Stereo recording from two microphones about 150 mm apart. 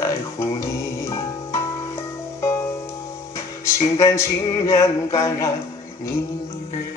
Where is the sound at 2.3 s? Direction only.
20° left (ahead or behind).